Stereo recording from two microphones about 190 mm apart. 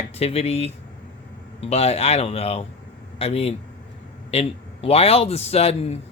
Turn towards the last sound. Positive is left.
turn(degrees=30)  # may be behind; listen again after turning